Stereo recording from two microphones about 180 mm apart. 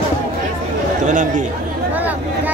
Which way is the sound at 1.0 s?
45° right (ahead or behind).